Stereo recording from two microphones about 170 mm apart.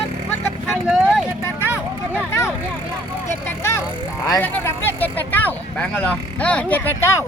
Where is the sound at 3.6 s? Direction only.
15° left (ahead or behind).